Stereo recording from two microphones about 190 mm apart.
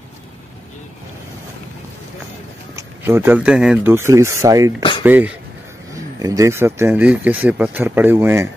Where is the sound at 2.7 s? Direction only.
15° right (ahead or behind).